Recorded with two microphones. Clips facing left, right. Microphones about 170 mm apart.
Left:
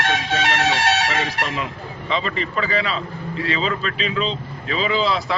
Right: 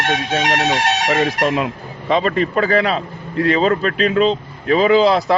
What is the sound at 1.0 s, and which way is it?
Speech, 45° right (ahead or behind).